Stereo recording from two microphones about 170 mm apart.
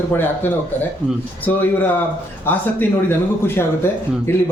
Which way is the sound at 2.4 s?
10° left (ahead or behind).